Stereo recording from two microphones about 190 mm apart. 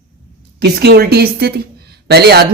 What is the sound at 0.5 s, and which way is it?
A woman's voice, 60° right (ahead or behind).